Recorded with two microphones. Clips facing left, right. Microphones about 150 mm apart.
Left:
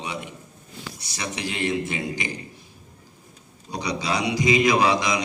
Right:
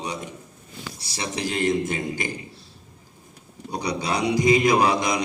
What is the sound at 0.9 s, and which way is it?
A man's voice, 30° right (ahead or behind).